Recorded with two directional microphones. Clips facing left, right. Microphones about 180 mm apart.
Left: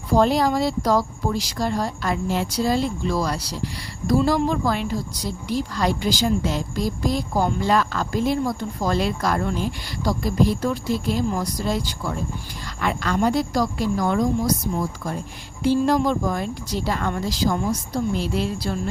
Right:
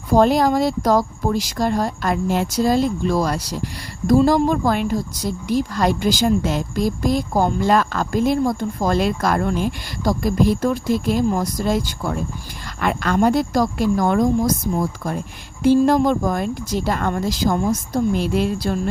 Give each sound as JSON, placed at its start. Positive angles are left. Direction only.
{"t": 0.1, "sound": "speech", "side_deg": -50}
{"t": 15.6, "sound": "speech", "side_deg": -50}